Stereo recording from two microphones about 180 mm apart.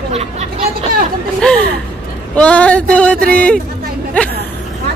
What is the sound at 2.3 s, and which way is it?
Speech, 5° left (ahead or behind).